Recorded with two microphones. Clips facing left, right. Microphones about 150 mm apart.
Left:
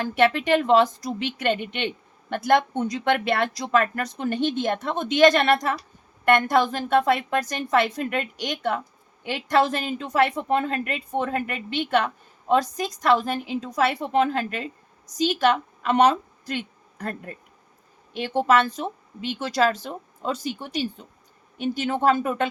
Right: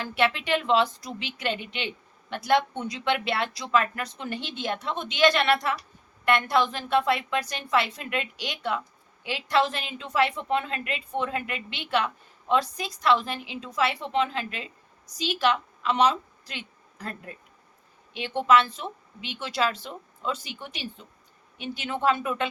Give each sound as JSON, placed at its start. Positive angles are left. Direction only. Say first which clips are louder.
{"t": 0.0, "sound": "a woman's voice", "louder": "left 5 dB", "side_deg": 45}